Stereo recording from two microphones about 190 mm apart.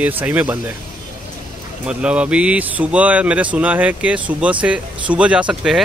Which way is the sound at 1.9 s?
5° right (ahead or behind).